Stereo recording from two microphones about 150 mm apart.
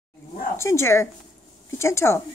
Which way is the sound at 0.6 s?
20° left (ahead or behind).